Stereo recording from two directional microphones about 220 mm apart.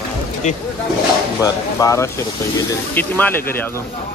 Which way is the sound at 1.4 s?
15° left (ahead or behind).